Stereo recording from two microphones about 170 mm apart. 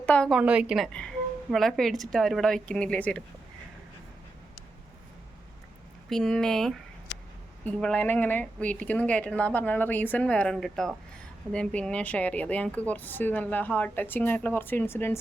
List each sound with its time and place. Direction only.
0.0 s a woman's voice: 5° left (ahead or behind)
0.3 s a woman's voice: 5° right (ahead or behind)
6.1 s a woman's voice: 5° left (ahead or behind)